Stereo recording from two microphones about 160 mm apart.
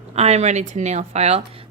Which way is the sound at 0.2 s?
40° right (ahead or behind).